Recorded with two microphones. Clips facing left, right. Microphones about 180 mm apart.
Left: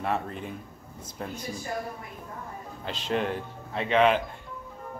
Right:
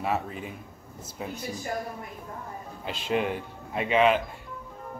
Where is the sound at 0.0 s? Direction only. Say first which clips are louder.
Even; 5° right (ahead or behind).